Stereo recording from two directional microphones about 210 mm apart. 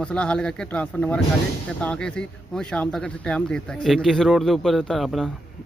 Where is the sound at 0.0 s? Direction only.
5° left (ahead or behind).